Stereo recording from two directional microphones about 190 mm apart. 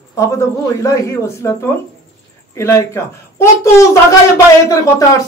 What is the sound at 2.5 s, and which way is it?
Speech, 15° left (ahead or behind).